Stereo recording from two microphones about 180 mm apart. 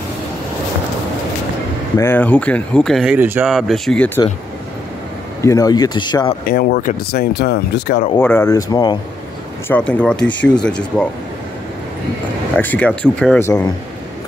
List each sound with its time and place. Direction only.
2.0 s speech: 10° left (ahead or behind)
3.2 s speech: 10° right (ahead or behind)
3.4 s speech: centre (ahead or behind)
5.4 s speech: 20° left (ahead or behind)
6.4 s speech: 55° left (ahead or behind)
8.2 s speech: 10° left (ahead or behind)
8.5 s speech: 20° left (ahead or behind)
9.7 s speech: 5° left (ahead or behind)
12.5 s speech: 10° left (ahead or behind)